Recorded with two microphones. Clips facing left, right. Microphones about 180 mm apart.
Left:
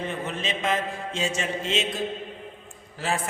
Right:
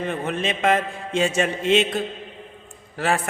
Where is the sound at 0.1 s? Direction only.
60° right (ahead or behind).